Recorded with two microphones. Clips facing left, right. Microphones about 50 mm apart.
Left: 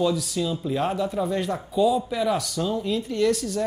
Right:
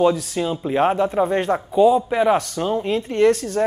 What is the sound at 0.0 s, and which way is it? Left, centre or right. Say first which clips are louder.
Speech: right 5 dB; right.